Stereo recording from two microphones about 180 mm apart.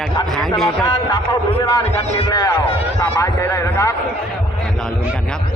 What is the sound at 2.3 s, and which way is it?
A man's voice, 15° left (ahead or behind).